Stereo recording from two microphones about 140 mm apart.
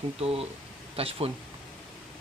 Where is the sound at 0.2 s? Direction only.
45° right (ahead or behind).